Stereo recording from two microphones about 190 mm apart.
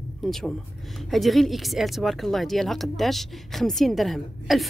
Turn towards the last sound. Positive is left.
turn(degrees=0)  # may be behind; listen again after turning